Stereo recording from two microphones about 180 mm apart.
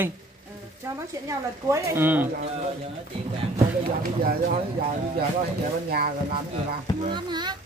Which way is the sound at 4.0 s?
55° right (ahead or behind).